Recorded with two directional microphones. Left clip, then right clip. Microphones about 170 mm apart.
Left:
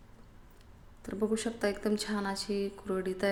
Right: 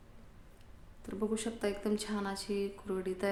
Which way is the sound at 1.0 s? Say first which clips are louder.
Left 4 dB; 15° left (ahead or behind).